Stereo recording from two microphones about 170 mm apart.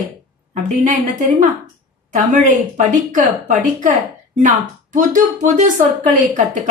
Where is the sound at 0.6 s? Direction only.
45° right (ahead or behind).